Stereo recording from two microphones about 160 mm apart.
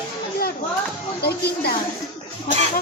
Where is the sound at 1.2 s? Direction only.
90° left.